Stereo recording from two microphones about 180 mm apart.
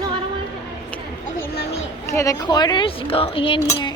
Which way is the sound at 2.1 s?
20° left (ahead or behind).